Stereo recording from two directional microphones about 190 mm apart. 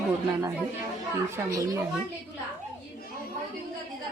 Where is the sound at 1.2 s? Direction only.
15° right (ahead or behind).